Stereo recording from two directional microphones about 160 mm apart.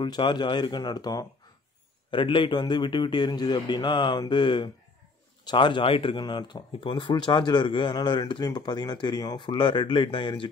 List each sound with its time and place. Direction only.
0.0 s speech: 30° left (ahead or behind)